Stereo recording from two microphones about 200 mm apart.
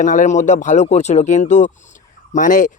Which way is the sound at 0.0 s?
40° left (ahead or behind).